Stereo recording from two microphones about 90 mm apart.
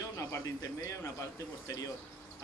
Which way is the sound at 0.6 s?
35° left (ahead or behind).